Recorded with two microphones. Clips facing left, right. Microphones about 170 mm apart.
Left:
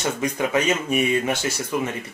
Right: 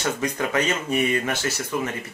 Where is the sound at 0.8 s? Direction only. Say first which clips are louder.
Left 2 dB; 15° left (ahead or behind).